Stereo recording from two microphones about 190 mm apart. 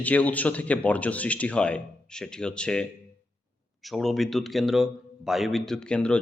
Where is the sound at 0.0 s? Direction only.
10° left (ahead or behind).